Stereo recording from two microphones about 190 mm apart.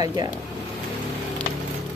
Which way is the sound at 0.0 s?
20° right (ahead or behind).